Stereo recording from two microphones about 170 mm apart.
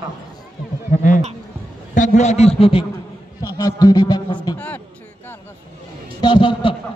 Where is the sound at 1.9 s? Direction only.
45° left (ahead or behind).